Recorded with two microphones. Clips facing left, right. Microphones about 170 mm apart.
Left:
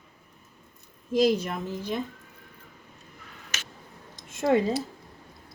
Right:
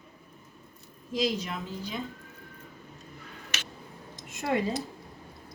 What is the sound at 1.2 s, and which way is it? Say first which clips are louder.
Speech: left 6 dB; 55° left (ahead or behind).